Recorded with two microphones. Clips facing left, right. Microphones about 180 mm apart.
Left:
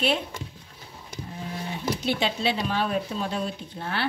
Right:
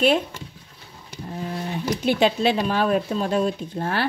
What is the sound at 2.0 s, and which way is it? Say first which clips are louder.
Speech: right 8 dB; 50° right (ahead or behind).